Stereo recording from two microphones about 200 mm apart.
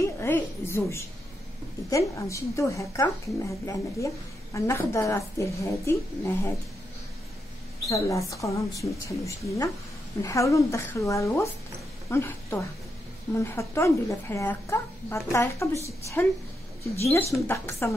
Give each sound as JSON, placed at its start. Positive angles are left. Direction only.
{"t": 0.0, "sound": "a woman's voice", "side_deg": 15}
{"t": 7.9, "sound": "a woman's voice", "side_deg": 15}
{"t": 17.0, "sound": "speech", "side_deg": 15}